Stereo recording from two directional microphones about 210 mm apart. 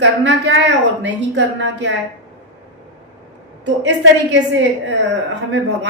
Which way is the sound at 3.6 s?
55° right (ahead or behind).